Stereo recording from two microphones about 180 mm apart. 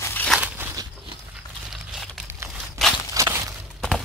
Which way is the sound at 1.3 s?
5° right (ahead or behind).